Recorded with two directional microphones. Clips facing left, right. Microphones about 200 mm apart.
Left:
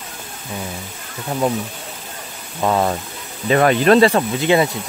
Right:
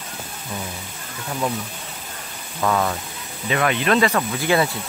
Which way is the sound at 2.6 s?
30° left (ahead or behind).